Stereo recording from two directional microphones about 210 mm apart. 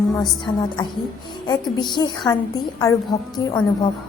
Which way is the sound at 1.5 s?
20° left (ahead or behind).